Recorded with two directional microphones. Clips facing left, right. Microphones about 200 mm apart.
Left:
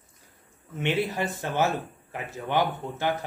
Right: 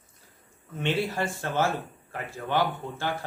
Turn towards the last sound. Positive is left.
turn(degrees=20)  # may be behind; listen again after turning